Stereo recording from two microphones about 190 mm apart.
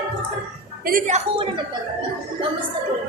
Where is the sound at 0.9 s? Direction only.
40° right (ahead or behind).